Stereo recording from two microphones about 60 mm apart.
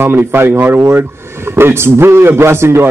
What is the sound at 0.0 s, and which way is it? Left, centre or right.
A man's voice, right.